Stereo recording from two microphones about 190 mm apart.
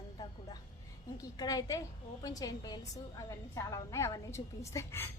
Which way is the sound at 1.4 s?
20° left (ahead or behind).